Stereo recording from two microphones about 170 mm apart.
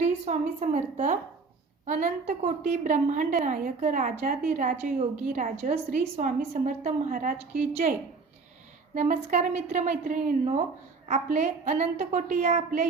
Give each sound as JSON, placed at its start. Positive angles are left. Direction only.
{"t": 0.0, "sound": "a woman's voice", "side_deg": -45}
{"t": 9.0, "sound": "a woman's voice", "side_deg": -45}